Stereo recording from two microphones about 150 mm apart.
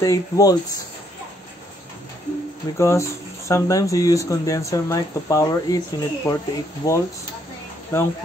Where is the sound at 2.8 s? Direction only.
20° left (ahead or behind).